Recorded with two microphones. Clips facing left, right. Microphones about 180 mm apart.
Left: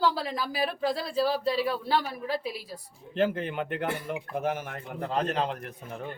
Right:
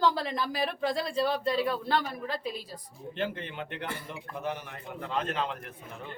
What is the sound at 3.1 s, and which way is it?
A man's voice, 45° left (ahead or behind).